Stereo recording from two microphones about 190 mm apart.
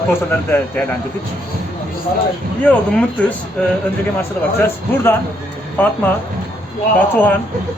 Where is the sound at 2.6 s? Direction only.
5° left (ahead or behind).